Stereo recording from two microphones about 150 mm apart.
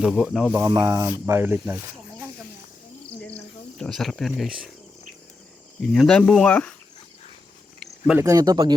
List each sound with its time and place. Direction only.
0.0 s speech: 5° right (ahead or behind)
0.6 s speech: 20° right (ahead or behind)
3.8 s speech: 5° left (ahead or behind)
5.9 s speech: 5° left (ahead or behind)
8.2 s speech: 25° right (ahead or behind)